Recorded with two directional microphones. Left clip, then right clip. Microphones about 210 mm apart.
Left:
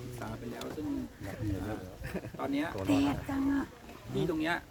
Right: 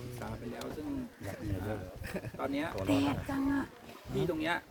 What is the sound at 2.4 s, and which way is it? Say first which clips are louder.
Speech: left 1 dB; centre (ahead or behind).